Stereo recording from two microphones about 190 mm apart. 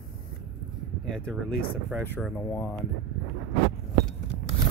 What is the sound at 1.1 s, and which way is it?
Speech, 5° left (ahead or behind).